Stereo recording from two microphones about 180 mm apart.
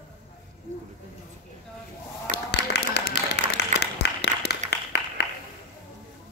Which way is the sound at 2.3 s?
65° left (ahead or behind).